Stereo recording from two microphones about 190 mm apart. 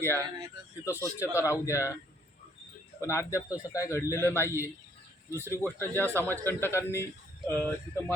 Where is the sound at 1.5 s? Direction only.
15° left (ahead or behind).